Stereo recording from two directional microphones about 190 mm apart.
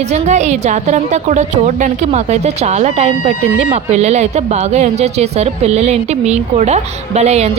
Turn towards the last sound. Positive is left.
turn(degrees=-35)  # may be behind; listen again after turning